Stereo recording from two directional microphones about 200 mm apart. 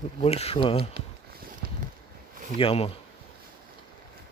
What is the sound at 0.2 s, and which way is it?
Speech, 30° left (ahead or behind).